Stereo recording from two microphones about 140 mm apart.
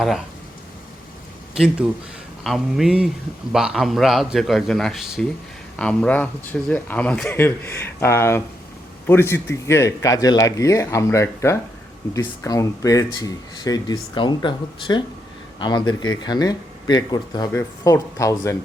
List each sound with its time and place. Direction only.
2.4 s speech: centre (ahead or behind); by 17.5 s 30° left (ahead or behind)
17.5 s speech: 15° left (ahead or behind)